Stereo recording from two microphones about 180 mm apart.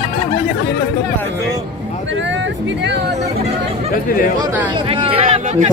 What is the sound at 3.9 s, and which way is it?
Speech, 50° left (ahead or behind).